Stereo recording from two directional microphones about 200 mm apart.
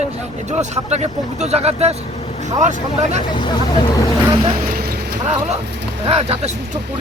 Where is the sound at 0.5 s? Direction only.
35° right (ahead or behind).